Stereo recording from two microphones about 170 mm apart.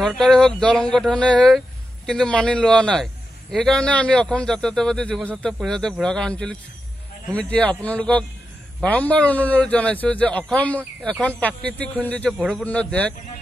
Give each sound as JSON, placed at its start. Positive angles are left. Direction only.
{"t": 0.0, "sound": "a man's voice", "side_deg": 5}
{"t": 12.4, "sound": "a man's voice", "side_deg": -5}
{"t": 12.6, "sound": "a man's voice", "side_deg": 10}